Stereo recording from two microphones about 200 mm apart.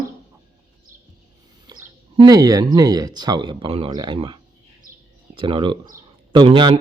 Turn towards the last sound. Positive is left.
turn(degrees=-25)  # may be behind; listen again after turning